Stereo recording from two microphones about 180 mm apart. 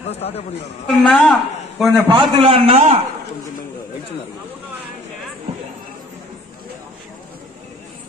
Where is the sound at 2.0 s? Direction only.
30° right (ahead or behind).